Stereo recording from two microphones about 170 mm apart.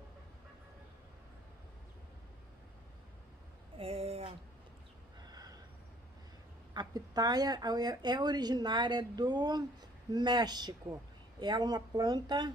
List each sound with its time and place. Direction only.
3.7 s a sound: 35° right (ahead or behind)
5.2 s snort: 25° right (ahead or behind)
6.7 s speech: 25° right (ahead or behind)